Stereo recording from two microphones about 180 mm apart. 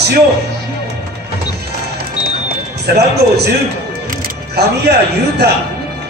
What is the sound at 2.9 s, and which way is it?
Speech, 65° right (ahead or behind).